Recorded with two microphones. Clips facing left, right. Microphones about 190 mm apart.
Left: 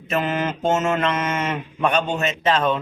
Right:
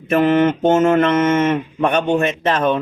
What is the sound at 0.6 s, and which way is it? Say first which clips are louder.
A man's voice: right 7 dB; 55° right (ahead or behind).